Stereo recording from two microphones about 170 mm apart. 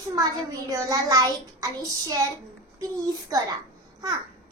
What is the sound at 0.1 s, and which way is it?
A child's voice, 20° right (ahead or behind).